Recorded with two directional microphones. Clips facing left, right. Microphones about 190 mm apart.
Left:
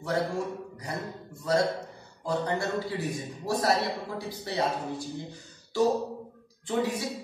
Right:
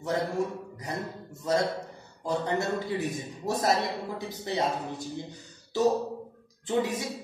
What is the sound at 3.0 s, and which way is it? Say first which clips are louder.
Speech: right 1 dB; 20° right (ahead or behind).